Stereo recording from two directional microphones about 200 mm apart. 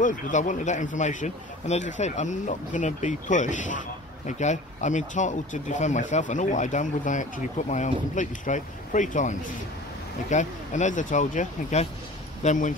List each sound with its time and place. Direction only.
0.0 s speech: 40° left (ahead or behind)
10.3 s speech: 35° left (ahead or behind)